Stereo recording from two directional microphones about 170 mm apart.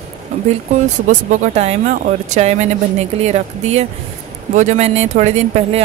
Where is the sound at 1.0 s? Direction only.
40° right (ahead or behind).